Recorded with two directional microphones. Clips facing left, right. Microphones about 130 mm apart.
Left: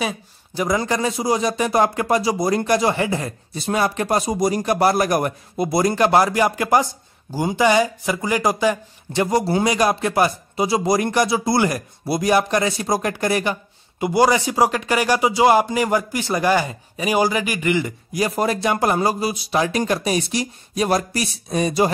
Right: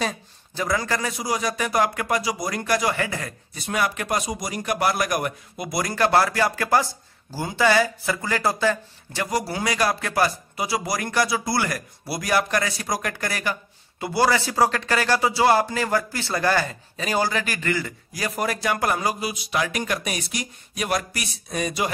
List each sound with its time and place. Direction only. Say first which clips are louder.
0.6 s speech: left 4 dB; 20° left (ahead or behind)
9.2 s speech: left 7 dB; 25° left (ahead or behind)